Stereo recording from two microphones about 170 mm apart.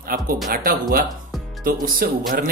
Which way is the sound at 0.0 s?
55° right (ahead or behind).